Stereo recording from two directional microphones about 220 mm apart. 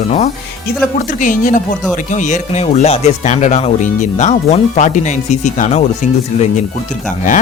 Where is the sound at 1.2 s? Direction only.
35° left (ahead or behind).